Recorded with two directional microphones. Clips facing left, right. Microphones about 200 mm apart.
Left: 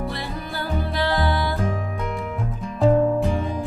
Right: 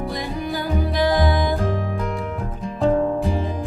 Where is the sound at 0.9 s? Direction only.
15° right (ahead or behind).